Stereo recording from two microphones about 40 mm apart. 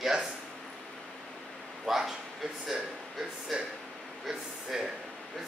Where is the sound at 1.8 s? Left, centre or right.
Centre.